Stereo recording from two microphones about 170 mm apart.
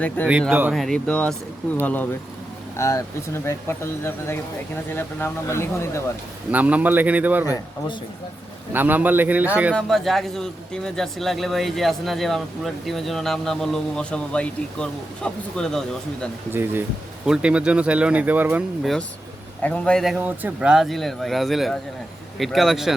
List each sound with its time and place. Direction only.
0.3 s speech: 5° right (ahead or behind); by 5.9 s 15° left (ahead or behind)
6.5 s speech: 10° right (ahead or behind)
7.4 s speech: 20° left (ahead or behind)
8.7 s speech: 10° right (ahead or behind)
9.7 s speech: centre (ahead or behind)
16.5 s speech: 10° right (ahead or behind)